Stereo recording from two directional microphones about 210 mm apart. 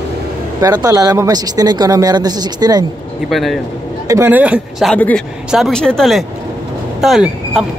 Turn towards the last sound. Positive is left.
turn(degrees=0)  # may be behind; listen again after turning